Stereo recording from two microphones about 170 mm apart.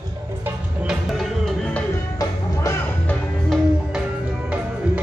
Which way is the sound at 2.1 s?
15° left (ahead or behind).